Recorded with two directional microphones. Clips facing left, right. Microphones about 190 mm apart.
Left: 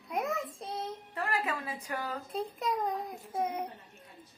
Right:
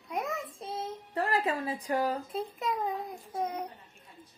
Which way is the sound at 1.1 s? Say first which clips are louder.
Right 5 dB; 35° right (ahead or behind).